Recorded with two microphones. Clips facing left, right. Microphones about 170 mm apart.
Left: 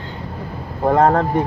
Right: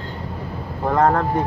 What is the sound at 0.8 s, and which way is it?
Speech, 55° left (ahead or behind).